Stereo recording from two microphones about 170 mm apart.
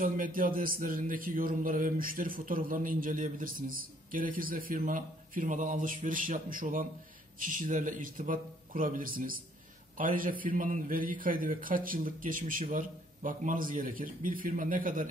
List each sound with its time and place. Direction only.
0.0 s speech: 55° right (ahead or behind)